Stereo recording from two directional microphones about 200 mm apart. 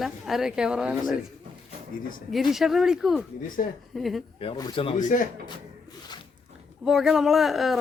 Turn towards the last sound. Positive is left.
turn(degrees=0)  # may be behind; listen again after turning